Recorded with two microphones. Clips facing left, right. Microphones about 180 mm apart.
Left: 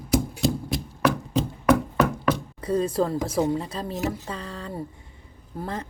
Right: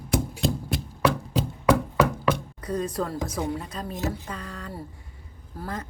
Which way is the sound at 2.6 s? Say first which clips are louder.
Left 5 dB; 25° left (ahead or behind).